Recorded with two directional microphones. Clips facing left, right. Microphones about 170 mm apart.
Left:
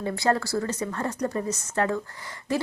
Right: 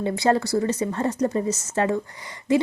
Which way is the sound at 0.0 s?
20° right (ahead or behind).